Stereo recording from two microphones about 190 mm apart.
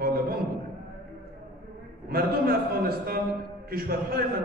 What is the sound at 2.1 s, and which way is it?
A man's voice, 50° right (ahead or behind).